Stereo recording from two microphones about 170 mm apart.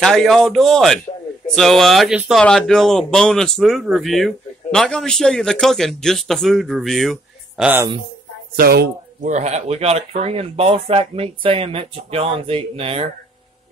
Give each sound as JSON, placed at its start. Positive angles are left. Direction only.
{"t": 0.0, "sound": "speech", "side_deg": 0}
{"t": 8.5, "sound": "speech", "side_deg": -65}
{"t": 9.2, "sound": "speech", "side_deg": -45}